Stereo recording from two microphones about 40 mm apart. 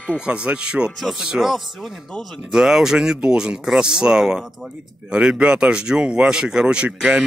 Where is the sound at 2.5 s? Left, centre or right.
Centre.